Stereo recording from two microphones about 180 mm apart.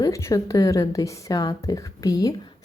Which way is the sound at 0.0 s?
20° left (ahead or behind).